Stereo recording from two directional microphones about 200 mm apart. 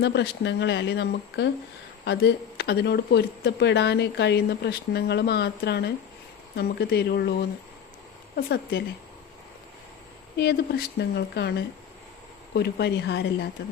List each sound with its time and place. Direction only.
0.0 s speech: 60° left (ahead or behind)
8.4 s speech: 50° left (ahead or behind)
10.3 s speech: 55° left (ahead or behind)